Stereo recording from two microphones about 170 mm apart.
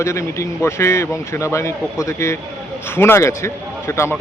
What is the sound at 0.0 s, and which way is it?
Speech, 15° left (ahead or behind).